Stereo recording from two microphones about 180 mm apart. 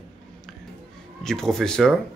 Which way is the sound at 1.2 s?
Centre (ahead or behind).